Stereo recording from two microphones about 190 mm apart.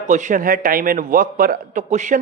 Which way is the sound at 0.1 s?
40° right (ahead or behind).